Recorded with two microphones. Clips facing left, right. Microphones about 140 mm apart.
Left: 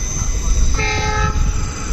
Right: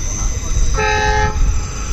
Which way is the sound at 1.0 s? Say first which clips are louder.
Right 5 dB; 80° right.